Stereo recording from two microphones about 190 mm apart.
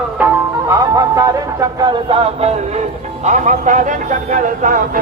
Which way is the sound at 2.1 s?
30° right (ahead or behind).